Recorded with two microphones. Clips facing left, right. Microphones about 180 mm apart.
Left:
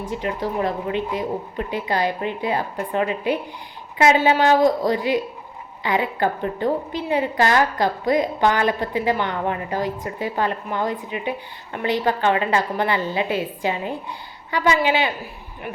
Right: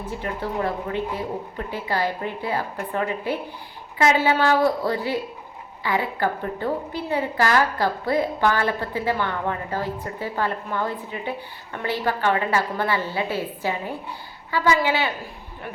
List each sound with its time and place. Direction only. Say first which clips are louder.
0.1 s a woman's voice: left 3 dB; 15° left (ahead or behind)